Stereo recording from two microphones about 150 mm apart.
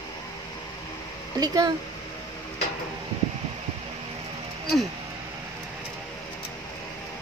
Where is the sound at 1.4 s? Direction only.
25° right (ahead or behind).